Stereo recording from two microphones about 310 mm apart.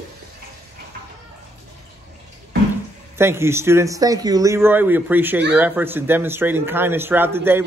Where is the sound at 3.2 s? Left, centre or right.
Centre.